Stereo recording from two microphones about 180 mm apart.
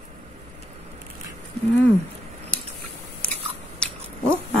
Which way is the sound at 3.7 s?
5° left (ahead or behind).